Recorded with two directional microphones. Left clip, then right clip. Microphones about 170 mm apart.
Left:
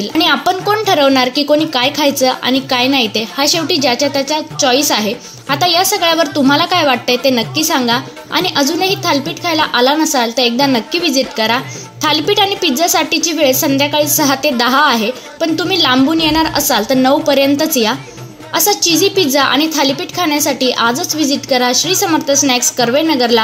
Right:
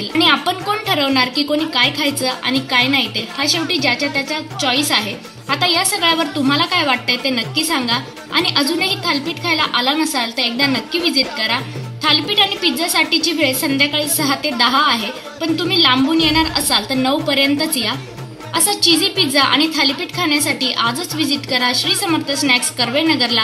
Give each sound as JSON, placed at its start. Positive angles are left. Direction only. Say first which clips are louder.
{"t": 0.2, "sound": "speech", "louder": "left 2 dB", "side_deg": 50}